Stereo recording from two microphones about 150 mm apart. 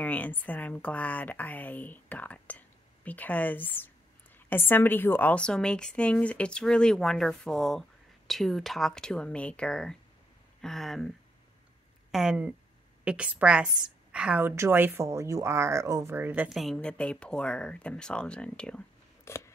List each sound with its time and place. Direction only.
0.0 s a woman's voice: 10° left (ahead or behind)
12.1 s a woman's voice: 5° right (ahead or behind)
16.4 s a woman's voice: centre (ahead or behind)
19.2 s scissors: 20° left (ahead or behind)